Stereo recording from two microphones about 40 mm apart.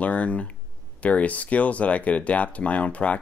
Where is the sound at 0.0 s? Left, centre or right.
Left.